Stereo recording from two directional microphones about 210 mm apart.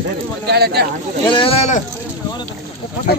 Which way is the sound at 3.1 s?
50° left (ahead or behind).